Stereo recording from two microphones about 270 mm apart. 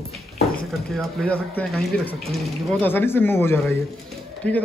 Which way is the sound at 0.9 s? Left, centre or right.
Centre.